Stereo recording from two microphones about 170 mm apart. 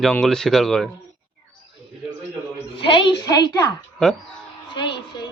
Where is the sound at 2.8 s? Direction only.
30° left (ahead or behind).